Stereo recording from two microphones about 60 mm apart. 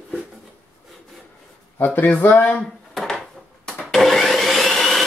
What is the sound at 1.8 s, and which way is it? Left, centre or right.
Speech, left.